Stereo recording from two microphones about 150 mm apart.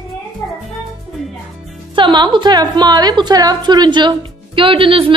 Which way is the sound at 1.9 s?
30° right (ahead or behind).